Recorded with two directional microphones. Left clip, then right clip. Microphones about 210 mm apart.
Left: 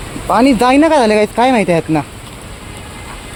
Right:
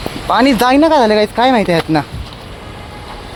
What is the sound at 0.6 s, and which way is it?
Speech, 15° left (ahead or behind).